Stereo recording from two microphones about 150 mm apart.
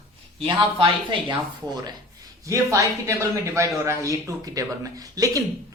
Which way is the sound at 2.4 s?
20° right (ahead or behind).